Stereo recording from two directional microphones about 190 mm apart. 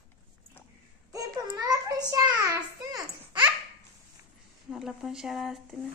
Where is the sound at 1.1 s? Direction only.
20° right (ahead or behind).